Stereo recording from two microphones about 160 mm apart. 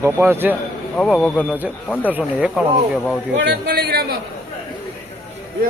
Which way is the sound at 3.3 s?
90° right.